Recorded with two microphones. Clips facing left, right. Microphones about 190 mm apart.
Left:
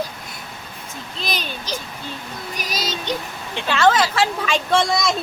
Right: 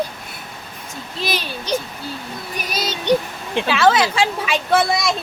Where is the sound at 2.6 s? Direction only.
55° right (ahead or behind).